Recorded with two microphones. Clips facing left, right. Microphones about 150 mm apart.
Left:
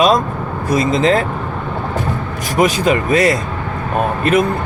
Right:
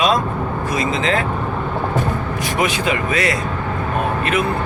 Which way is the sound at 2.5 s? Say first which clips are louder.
Left 7 dB; 40° left (ahead or behind).